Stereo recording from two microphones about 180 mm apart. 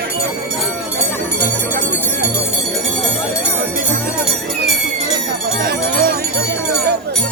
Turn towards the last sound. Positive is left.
turn(degrees=-60)  # may be behind; listen again after turning